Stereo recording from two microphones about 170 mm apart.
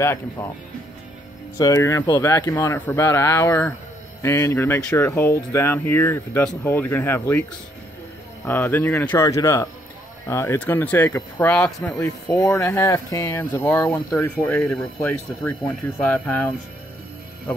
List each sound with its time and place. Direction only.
0.0 s speech: 15° left (ahead or behind)
1.6 s speech: 20° left (ahead or behind)
8.5 s speech: 10° left (ahead or behind)